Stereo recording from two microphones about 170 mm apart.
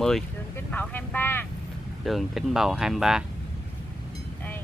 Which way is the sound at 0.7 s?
10° left (ahead or behind).